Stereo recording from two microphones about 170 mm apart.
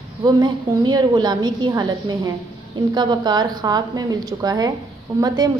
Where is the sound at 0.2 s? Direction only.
25° right (ahead or behind).